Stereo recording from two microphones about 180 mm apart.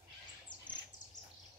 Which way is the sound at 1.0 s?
45° left (ahead or behind).